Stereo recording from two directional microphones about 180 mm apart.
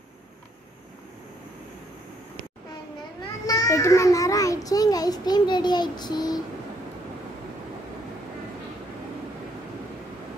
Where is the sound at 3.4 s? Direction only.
20° left (ahead or behind).